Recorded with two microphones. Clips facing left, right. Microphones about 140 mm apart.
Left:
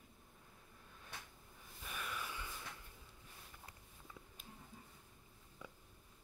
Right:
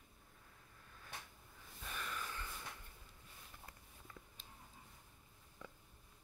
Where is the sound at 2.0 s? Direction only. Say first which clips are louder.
Left 1 dB; 10° left (ahead or behind).